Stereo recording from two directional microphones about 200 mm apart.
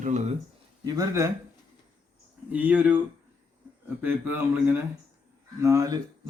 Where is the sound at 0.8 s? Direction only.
15° right (ahead or behind).